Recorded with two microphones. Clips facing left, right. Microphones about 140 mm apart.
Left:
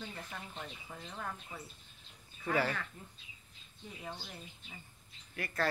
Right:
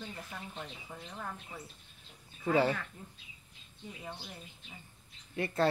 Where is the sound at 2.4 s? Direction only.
25° right (ahead or behind).